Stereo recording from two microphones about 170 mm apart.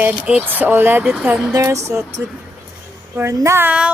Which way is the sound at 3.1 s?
15° right (ahead or behind).